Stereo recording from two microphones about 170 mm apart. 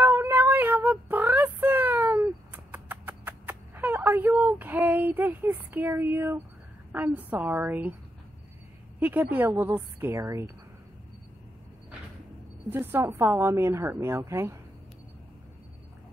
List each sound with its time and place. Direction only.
0.0 s child singing: 10° right (ahead or behind)
6.9 s a woman's voice: 10° right (ahead or behind)
9.0 s a woman's voice: 10° right (ahead or behind)
12.6 s a woman's voice: 15° right (ahead or behind)